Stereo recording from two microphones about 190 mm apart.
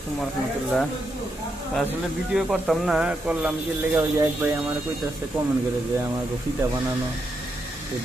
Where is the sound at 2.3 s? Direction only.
Centre (ahead or behind).